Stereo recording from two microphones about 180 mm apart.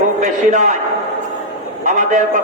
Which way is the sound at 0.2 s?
40° right (ahead or behind).